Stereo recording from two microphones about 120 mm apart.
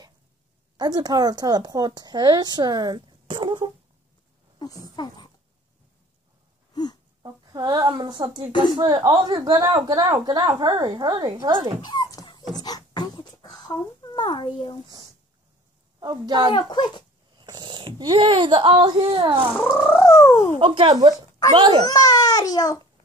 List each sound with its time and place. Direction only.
0.7 s a woman's voice: 35° right (ahead or behind)
4.9 s a child's voice: 35° left (ahead or behind)
6.7 s wail: 35° left (ahead or behind)
7.2 s a woman's voice: 35° right (ahead or behind)
11.8 s dog: 35° left (ahead or behind)
12.6 s beatboxing: 35° left (ahead or behind)
13.7 s a child's voice: 40° left (ahead or behind)
16.0 s a woman's voice: 35° right (ahead or behind)
16.5 s a child's voice: 35° left (ahead or behind)
17.4 s speech: 40° right (ahead or behind)
19.5 s a sound: 15° left (ahead or behind)
20.5 s speech: 45° right (ahead or behind)
21.8 s a child's voice: 30° left (ahead or behind)